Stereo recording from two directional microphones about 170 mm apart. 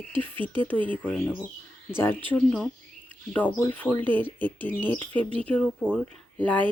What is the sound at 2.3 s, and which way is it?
Speech, 10° left (ahead or behind).